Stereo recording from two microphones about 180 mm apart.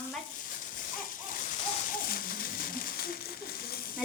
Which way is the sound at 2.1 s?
55° left (ahead or behind).